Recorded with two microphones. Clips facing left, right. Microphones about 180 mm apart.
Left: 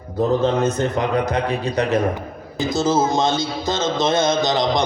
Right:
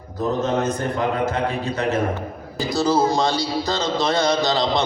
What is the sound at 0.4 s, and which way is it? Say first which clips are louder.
A man's voice: left 3 dB; 25° left (ahead or behind).